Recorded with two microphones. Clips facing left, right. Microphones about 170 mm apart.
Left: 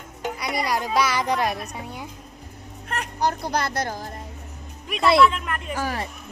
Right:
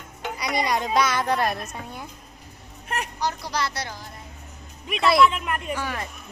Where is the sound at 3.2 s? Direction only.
55° left (ahead or behind).